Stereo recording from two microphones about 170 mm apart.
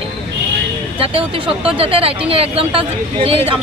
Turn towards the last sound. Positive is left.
turn(degrees=-35)  # may be behind; listen again after turning